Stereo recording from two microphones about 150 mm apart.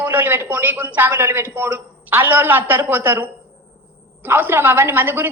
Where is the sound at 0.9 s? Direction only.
15° right (ahead or behind).